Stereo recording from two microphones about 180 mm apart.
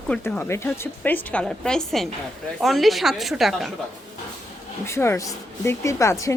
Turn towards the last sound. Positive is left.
turn(degrees=15)  # may be behind; listen again after turning